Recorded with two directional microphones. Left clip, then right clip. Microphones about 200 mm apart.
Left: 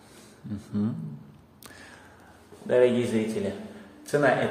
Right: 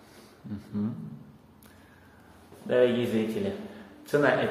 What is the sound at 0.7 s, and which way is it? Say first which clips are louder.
Speech: left 3 dB; 25° left (ahead or behind).